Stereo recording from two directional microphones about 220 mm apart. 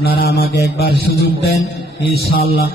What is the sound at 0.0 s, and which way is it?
A man's voice, 45° left (ahead or behind).